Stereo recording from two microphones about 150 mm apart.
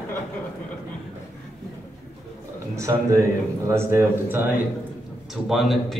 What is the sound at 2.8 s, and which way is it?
A man's voice, 20° right (ahead or behind).